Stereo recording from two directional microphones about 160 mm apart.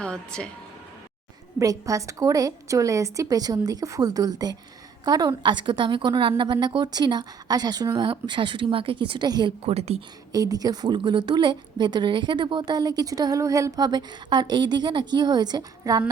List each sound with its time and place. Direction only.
0.0 s speech: 5° left (ahead or behind)
1.5 s a woman's voice: 20° right (ahead or behind)
9.6 s a woman's voice: 40° right (ahead or behind)
10.3 s a woman's voice: 25° right (ahead or behind)